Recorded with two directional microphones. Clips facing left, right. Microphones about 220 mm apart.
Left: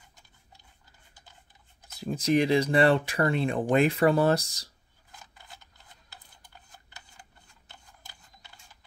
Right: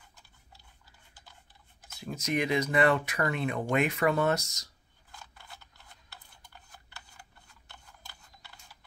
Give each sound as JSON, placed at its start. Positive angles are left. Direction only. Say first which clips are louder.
{"t": 1.9, "sound": "speech", "louder": "left 7 dB", "side_deg": 35}